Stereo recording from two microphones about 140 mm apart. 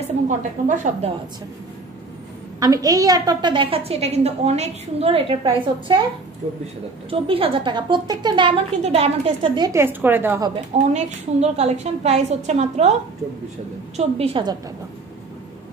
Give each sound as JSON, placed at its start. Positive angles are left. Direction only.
{"t": 0.0, "sound": "a woman's voice", "side_deg": -65}
{"t": 2.6, "sound": "a woman's voice", "side_deg": -25}
{"t": 7.1, "sound": "a woman's voice", "side_deg": -40}
{"t": 8.8, "sound": "a woman's voice", "side_deg": -45}
{"t": 9.6, "sound": "a woman's voice", "side_deg": -20}
{"t": 10.8, "sound": "a woman's voice", "side_deg": -55}
{"t": 13.9, "sound": "a woman's voice", "side_deg": -45}